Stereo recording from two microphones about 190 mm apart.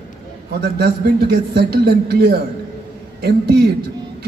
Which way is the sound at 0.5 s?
55° right (ahead or behind).